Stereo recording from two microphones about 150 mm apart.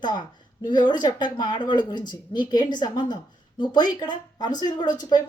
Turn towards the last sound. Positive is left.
turn(degrees=30)  # may be behind; listen again after turning